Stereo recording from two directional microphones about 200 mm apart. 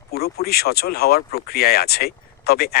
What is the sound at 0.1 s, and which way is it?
Speech, 50° left (ahead or behind).